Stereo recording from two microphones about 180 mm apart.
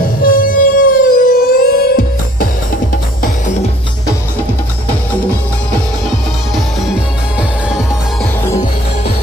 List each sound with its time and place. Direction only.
0.2 s music: 55° left (ahead or behind)